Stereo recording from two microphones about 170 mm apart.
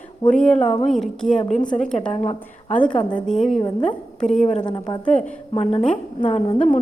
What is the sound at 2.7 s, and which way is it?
Speech, 10° left (ahead or behind).